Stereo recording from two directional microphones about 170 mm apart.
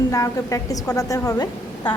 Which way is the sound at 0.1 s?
20° left (ahead or behind).